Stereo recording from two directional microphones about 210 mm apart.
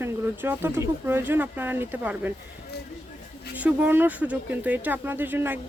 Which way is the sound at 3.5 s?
5° right (ahead or behind).